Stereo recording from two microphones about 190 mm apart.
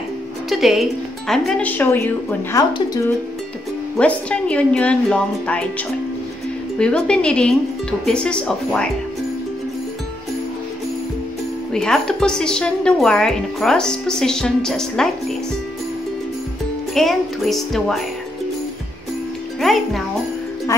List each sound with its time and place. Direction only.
0.5 s a woman's voice: centre (ahead or behind)
6.8 s a woman's voice: 5° left (ahead or behind)
11.7 s a woman's voice: 5° left (ahead or behind)
16.9 s a woman's voice: centre (ahead or behind)
19.6 s a child's voice: centre (ahead or behind)